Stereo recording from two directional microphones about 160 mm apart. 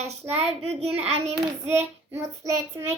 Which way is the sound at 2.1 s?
15° right (ahead or behind).